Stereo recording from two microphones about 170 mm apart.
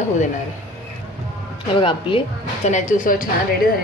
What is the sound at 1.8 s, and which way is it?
A woman's voice, 30° left (ahead or behind).